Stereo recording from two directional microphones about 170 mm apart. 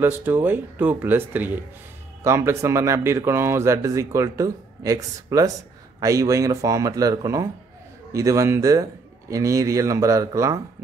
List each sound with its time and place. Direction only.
0.0 s speech: 10° right (ahead or behind)